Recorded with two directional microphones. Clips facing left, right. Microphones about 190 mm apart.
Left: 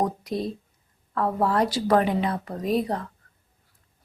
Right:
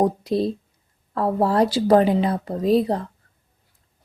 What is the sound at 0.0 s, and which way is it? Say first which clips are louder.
A woman's voice: right 6 dB; 30° right (ahead or behind).